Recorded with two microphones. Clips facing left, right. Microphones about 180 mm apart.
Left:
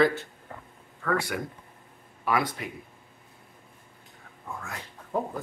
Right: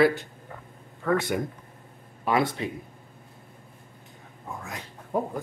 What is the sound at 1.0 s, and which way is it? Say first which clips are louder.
Speech: right 4 dB; 20° right (ahead or behind).